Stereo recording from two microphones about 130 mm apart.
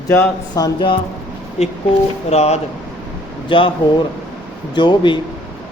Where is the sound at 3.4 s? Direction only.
40° left (ahead or behind).